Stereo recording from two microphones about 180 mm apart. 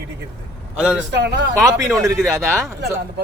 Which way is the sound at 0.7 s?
5° right (ahead or behind).